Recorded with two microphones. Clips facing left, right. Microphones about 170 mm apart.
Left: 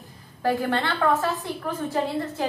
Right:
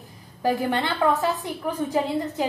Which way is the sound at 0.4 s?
15° right (ahead or behind).